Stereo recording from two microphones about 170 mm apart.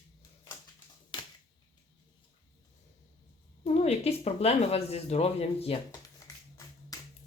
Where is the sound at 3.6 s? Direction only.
40° left (ahead or behind).